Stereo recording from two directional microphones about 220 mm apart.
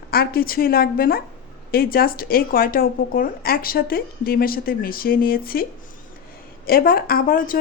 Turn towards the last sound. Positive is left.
turn(degrees=40)  # may be behind; listen again after turning